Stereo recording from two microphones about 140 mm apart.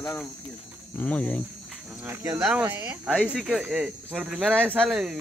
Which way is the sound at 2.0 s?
20° right (ahead or behind).